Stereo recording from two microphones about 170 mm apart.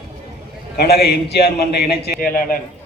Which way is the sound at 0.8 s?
70° left (ahead or behind).